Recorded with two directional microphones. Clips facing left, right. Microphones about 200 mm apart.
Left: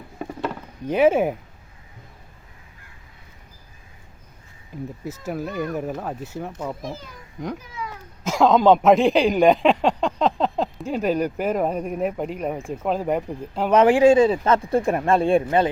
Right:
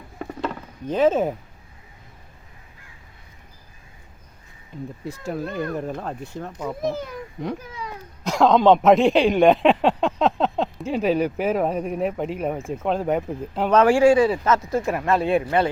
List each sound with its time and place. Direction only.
0.2 s a sound: 10° left (ahead or behind)
5.0 s speech: 5° left (ahead or behind)
8.2 s speech: centre (ahead or behind)
13.7 s speech: 15° left (ahead or behind)